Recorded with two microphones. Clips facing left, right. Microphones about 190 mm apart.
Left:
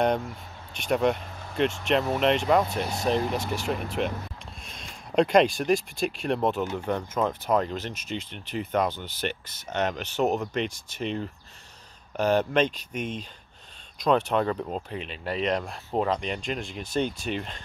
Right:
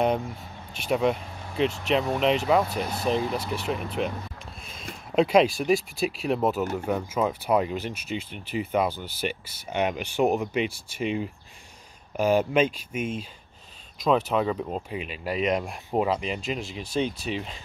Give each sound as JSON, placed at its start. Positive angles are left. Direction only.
{"t": 0.7, "sound": "speech", "side_deg": 0}